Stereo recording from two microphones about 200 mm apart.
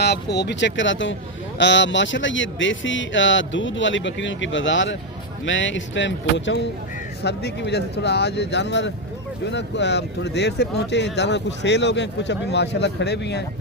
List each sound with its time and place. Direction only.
0.0 s speech: 60° left (ahead or behind)